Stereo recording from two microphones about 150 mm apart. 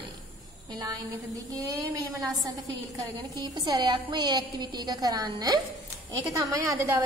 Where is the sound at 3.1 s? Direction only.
25° right (ahead or behind).